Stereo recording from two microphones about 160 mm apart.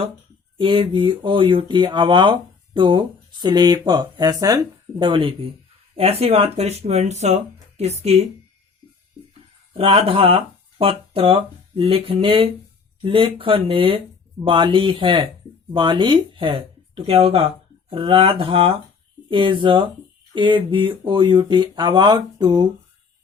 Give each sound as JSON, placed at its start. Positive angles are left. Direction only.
{"t": 0.5, "sound": "speech", "side_deg": -30}
{"t": 9.7, "sound": "speech", "side_deg": -40}